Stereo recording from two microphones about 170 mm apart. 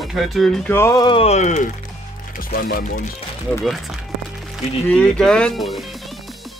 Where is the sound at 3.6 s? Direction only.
Centre (ahead or behind).